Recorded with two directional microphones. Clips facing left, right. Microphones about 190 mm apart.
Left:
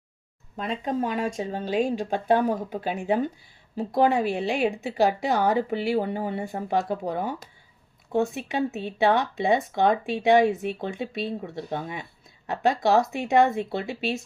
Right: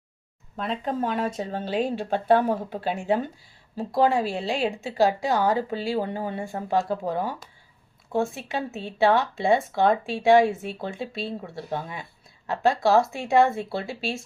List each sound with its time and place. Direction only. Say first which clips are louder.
0.5 s speech: even; 15° left (ahead or behind)